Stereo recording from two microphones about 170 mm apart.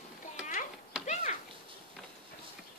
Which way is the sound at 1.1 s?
45° left (ahead or behind).